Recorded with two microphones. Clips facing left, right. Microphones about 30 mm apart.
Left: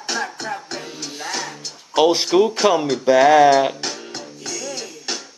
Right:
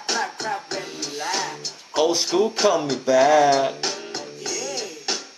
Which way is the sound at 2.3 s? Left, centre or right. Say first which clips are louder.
Left 4 dB; left.